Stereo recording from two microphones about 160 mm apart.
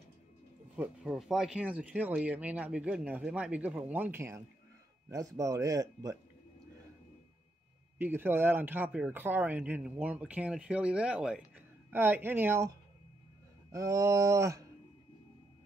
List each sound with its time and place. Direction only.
0.7 s speech: 5° right (ahead or behind); by 6.1 s 20° right (ahead or behind)
8.0 s speech: 15° right (ahead or behind)